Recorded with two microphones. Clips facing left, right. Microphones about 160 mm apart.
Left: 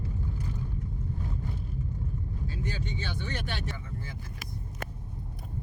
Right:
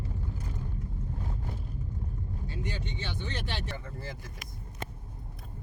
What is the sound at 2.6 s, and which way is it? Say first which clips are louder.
Vehicle: left 2 dB; 20° right (ahead or behind).